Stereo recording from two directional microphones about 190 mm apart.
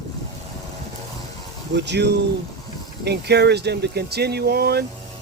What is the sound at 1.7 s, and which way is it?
Speech, 65° right (ahead or behind).